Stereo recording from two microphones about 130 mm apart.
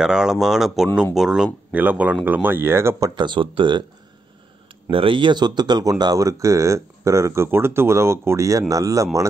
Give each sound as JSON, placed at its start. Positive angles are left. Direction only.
{"t": 0.0, "sound": "speech", "side_deg": -5}
{"t": 3.2, "sound": "speech", "side_deg": -40}
{"t": 4.9, "sound": "speech", "side_deg": -40}